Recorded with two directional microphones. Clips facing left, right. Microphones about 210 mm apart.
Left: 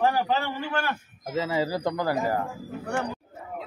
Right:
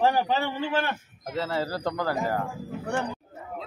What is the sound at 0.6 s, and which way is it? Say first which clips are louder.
Speech: right 2 dB; 20° right (ahead or behind).